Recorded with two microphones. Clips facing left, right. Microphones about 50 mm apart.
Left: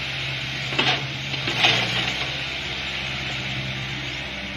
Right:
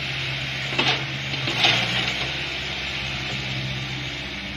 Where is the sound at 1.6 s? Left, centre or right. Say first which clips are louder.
Left 1 dB; centre.